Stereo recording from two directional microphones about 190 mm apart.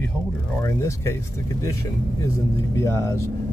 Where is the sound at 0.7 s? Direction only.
15° left (ahead or behind).